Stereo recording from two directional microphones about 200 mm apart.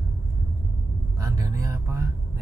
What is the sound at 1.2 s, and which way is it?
Speech, 15° right (ahead or behind).